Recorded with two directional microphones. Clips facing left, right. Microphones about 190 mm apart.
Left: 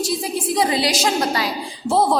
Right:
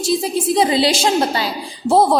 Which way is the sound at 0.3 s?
25° right (ahead or behind).